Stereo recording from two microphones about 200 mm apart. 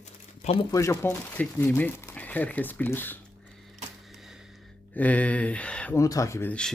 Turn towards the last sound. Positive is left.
turn(degrees=10)  # may be behind; listen again after turning